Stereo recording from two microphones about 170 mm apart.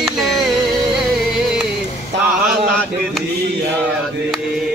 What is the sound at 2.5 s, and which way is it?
Chant, 5° right (ahead or behind).